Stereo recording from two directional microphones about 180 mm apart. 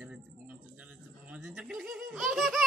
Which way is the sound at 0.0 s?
5° right (ahead or behind).